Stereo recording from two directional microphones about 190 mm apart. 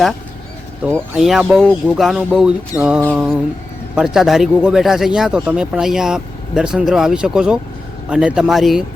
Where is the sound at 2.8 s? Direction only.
10° right (ahead or behind).